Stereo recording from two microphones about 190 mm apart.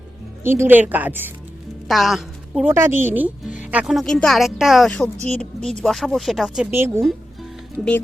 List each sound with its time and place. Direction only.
0.4 s a woman's voice: 10° right (ahead or behind)
2.7 s speech: 10° right (ahead or behind)